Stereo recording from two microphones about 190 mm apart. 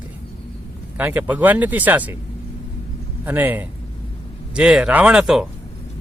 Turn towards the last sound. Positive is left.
turn(degrees=-5)  # may be behind; listen again after turning